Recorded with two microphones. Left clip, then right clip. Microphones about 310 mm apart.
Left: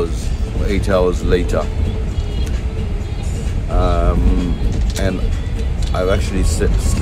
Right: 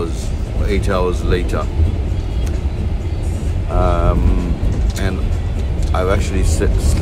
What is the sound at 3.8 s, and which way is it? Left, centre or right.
Vehicle, centre.